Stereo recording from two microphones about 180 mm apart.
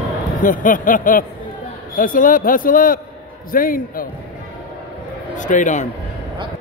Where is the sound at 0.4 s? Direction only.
50° left (ahead or behind).